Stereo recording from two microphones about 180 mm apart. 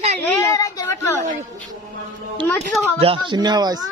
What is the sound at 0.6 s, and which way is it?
Speech, 20° left (ahead or behind).